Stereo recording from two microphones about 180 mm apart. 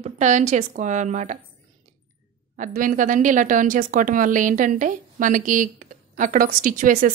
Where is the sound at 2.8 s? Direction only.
45° right (ahead or behind).